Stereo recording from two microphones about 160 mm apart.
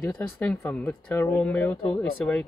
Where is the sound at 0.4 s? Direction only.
10° left (ahead or behind).